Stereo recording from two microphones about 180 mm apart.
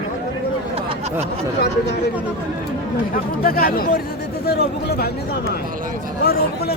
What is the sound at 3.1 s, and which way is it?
Speech, 55° left (ahead or behind).